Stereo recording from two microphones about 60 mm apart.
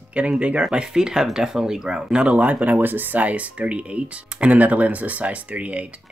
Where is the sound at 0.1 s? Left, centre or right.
Right.